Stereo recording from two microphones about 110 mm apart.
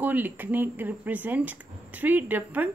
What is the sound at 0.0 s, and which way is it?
Speech, 15° right (ahead or behind).